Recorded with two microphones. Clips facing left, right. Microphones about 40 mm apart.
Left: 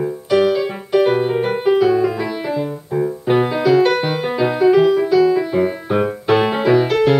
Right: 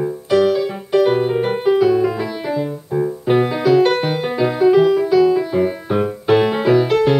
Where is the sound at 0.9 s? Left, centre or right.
Centre.